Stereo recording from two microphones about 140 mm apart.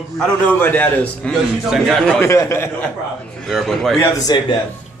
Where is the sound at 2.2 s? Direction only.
20° left (ahead or behind).